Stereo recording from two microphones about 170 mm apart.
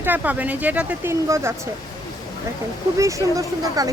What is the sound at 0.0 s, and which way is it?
Speech, 10° right (ahead or behind).